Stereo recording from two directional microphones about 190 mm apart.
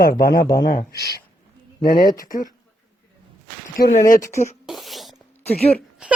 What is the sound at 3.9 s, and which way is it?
Speech, 45° left (ahead or behind).